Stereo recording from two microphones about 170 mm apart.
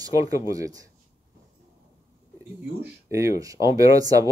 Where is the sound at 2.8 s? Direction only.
15° right (ahead or behind).